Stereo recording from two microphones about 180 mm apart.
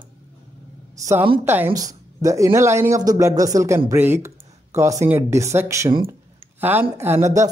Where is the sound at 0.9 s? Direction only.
15° right (ahead or behind).